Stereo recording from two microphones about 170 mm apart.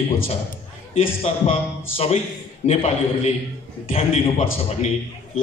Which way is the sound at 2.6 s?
40° left (ahead or behind).